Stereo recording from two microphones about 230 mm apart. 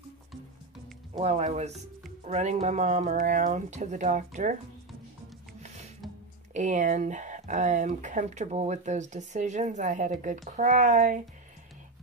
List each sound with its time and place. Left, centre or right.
1.1 s speech: right
6.5 s speech: right